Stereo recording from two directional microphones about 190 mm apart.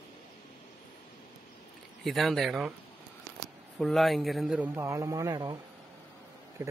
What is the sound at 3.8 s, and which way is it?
A man's voice, centre (ahead or behind).